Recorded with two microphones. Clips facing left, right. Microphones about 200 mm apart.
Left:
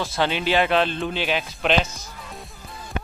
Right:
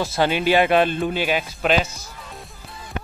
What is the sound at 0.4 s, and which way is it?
Speech, 10° right (ahead or behind).